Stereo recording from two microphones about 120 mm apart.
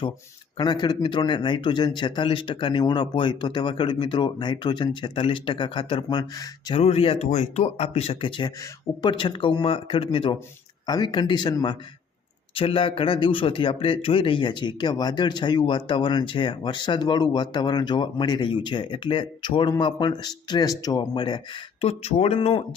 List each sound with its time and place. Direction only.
0.5 s speech: 40° left (ahead or behind)
6.7 s speech: 55° left (ahead or behind)
7.3 s speech: 70° left (ahead or behind); by 10.3 s 45° left (ahead or behind)
10.8 s speech: 35° left (ahead or behind)
12.5 s speech: 45° left (ahead or behind)
21.8 s speech: 60° left (ahead or behind)